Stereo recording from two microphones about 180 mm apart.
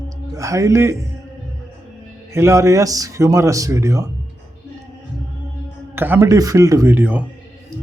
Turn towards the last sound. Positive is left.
turn(degrees=-10)  # may be behind; listen again after turning